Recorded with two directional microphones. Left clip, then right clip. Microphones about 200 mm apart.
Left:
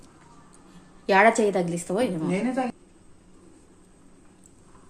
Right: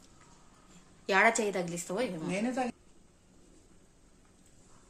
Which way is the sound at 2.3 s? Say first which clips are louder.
Left 6 dB; 35° right (ahead or behind).